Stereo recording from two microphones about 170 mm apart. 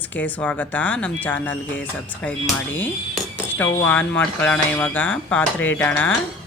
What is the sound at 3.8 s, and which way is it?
Speech, 10° left (ahead or behind).